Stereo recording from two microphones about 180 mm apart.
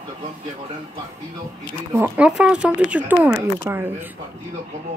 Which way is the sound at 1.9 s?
10° right (ahead or behind).